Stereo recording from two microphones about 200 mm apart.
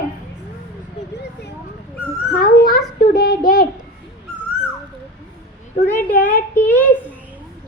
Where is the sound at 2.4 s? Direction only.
50° left (ahead or behind).